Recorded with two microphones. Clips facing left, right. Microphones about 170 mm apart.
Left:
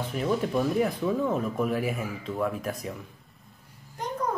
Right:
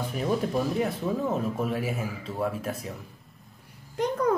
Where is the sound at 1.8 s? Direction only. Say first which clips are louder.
Left 1 dB; 30° right (ahead or behind).